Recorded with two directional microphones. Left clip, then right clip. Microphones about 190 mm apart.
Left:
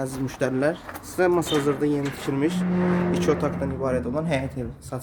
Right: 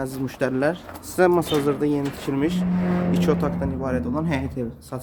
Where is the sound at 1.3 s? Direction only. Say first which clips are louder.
Right 2 dB; 10° right (ahead or behind).